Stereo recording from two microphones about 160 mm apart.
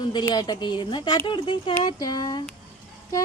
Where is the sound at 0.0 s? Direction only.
30° left (ahead or behind).